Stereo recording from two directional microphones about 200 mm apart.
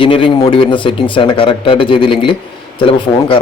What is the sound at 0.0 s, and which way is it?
A man's voice, 25° left (ahead or behind).